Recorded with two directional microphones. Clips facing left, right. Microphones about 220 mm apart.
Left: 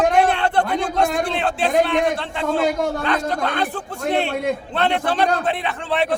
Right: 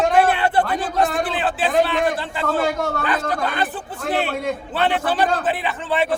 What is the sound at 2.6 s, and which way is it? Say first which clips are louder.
Speech: left 2 dB; 20° left (ahead or behind).